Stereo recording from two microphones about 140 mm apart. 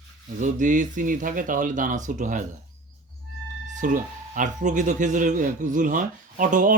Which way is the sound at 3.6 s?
65° right (ahead or behind).